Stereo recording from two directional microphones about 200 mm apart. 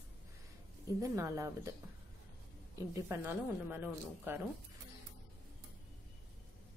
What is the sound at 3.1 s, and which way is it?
A woman's voice, 10° right (ahead or behind).